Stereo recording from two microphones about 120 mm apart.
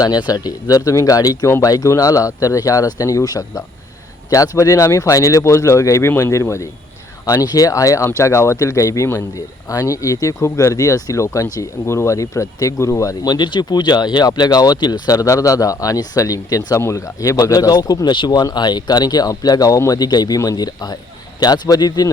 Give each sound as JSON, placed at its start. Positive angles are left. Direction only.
{"t": 0.0, "sound": "speech", "side_deg": 35}